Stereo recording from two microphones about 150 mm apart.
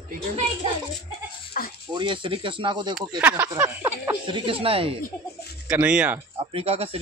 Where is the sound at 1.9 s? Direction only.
30° right (ahead or behind).